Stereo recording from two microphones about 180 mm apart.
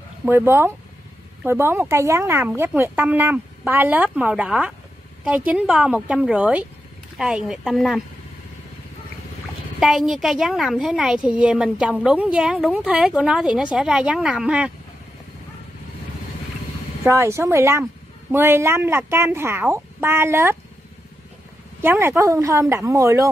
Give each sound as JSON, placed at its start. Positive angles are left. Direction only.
{"t": 0.5, "sound": "a woman's voice", "side_deg": -15}
{"t": 9.8, "sound": "a woman's voice", "side_deg": 0}
{"t": 17.0, "sound": "speech", "side_deg": -15}
{"t": 21.8, "sound": "speech", "side_deg": -15}